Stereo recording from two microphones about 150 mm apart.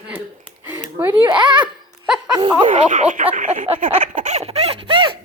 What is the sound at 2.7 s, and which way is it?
Speech, 55° right (ahead or behind).